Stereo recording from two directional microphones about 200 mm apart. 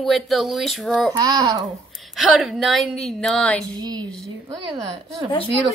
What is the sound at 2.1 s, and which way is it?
Speech, centre (ahead or behind).